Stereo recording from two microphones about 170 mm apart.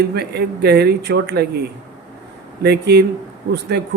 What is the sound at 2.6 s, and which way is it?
Speech, 75° right (ahead or behind).